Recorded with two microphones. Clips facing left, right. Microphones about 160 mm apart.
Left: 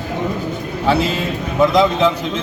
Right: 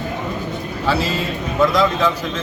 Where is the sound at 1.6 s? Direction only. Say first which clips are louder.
Left 3 dB; 20° left (ahead or behind).